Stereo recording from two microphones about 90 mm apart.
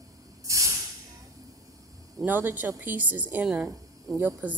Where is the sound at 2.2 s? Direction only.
20° right (ahead or behind).